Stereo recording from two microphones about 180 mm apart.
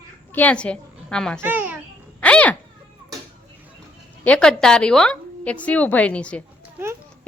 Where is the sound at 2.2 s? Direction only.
10° left (ahead or behind).